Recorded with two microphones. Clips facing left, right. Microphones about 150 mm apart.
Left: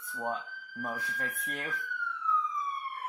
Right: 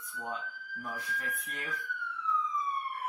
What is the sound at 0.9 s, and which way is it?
Speech, 55° left (ahead or behind).